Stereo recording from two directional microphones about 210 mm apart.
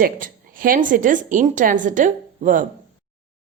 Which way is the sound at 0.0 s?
40° right (ahead or behind).